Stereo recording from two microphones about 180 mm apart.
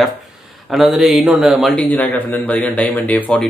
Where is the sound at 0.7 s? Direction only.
Centre (ahead or behind).